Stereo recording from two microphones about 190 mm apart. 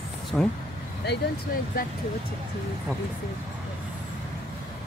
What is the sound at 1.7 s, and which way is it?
Speech, 50° left (ahead or behind).